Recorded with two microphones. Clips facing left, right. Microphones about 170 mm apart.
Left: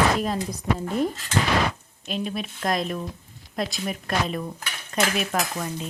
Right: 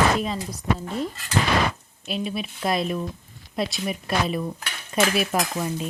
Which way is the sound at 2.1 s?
5° right (ahead or behind).